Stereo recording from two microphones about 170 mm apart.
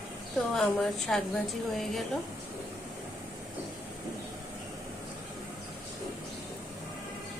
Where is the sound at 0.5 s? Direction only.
5° left (ahead or behind).